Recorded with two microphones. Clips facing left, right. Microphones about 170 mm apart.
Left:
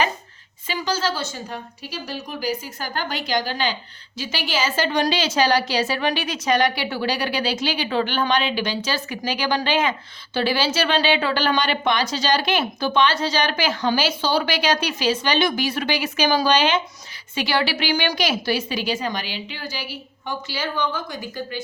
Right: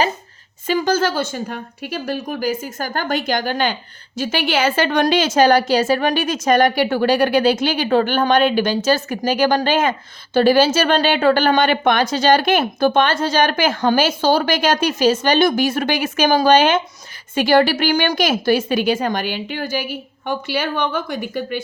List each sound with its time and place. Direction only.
0.7 s a woman's voice: 55° right (ahead or behind)